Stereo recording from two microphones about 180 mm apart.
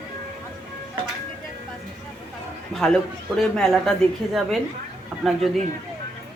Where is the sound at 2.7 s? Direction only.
Centre (ahead or behind).